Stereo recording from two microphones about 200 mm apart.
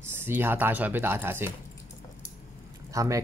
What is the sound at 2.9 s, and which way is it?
Speech, 15° right (ahead or behind).